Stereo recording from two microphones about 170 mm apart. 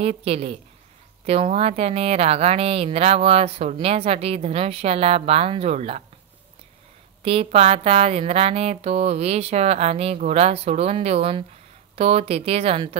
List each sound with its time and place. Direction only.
0.0 s speech: 35° right (ahead or behind)
7.2 s speech: 35° right (ahead or behind)